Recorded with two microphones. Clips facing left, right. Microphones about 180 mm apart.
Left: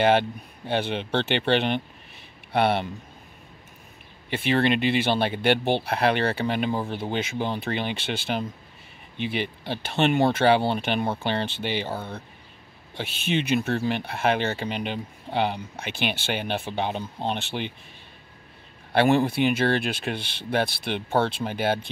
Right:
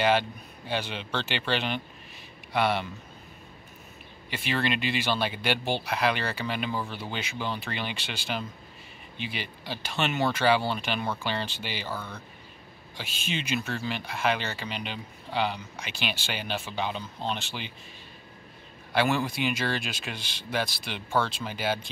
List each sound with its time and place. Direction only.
0.0 s speech: 55° left (ahead or behind)
4.3 s speech: 55° left (ahead or behind)
12.9 s speech: 60° left (ahead or behind)
18.9 s speech: 55° left (ahead or behind)